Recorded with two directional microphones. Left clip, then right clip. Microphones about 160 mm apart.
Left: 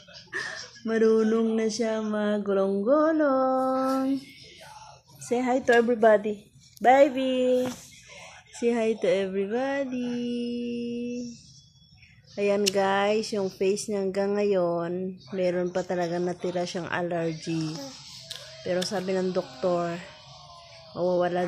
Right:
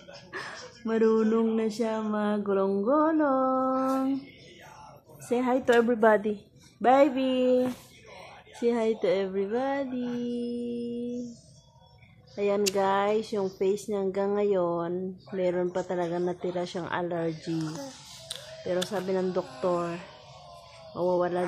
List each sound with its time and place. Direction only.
0.3 s speech: 5° left (ahead or behind)
5.3 s a woman's voice: 5° right (ahead or behind)
8.5 s speech: 10° left (ahead or behind)
12.4 s speech: 15° left (ahead or behind)
18.3 s a sound: 25° right (ahead or behind)
18.7 s speech: 10° left (ahead or behind)
20.9 s speech: 10° left (ahead or behind)